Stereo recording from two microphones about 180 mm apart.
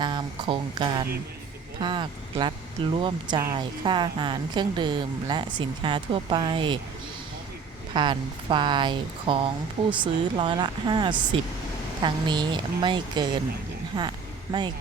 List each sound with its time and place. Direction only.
0.0 s speech: 25° right (ahead or behind)
7.9 s speech: 25° right (ahead or behind)